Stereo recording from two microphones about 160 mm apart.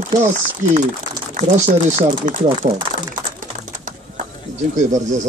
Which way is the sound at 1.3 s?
45° right (ahead or behind).